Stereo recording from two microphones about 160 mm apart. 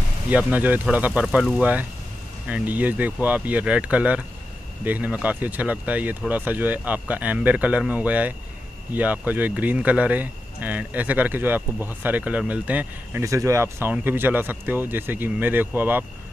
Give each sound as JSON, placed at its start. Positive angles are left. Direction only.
{"t": 0.5, "sound": "speech", "side_deg": -10}